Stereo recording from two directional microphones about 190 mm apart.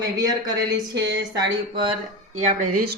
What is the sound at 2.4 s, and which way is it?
Speech, 45° right (ahead or behind).